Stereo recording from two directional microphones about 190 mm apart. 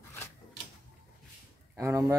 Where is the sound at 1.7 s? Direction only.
15° right (ahead or behind).